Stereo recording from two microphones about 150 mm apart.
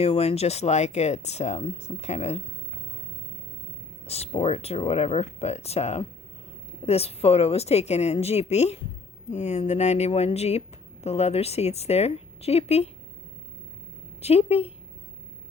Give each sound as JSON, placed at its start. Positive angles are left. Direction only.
{"t": 0.0, "sound": "speech", "side_deg": 40}
{"t": 4.0, "sound": "speech", "side_deg": 45}
{"t": 14.2, "sound": "speech", "side_deg": 45}